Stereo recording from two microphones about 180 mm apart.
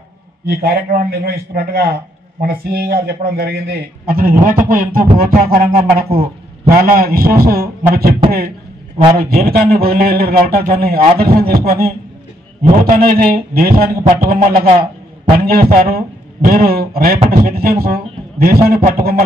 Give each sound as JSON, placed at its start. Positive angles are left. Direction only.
{"t": 0.5, "sound": "speech", "side_deg": -55}
{"t": 4.6, "sound": "music", "side_deg": -50}
{"t": 5.9, "sound": "speech", "side_deg": -55}
{"t": 8.3, "sound": "a sound", "side_deg": -55}
{"t": 9.2, "sound": "speech", "side_deg": -55}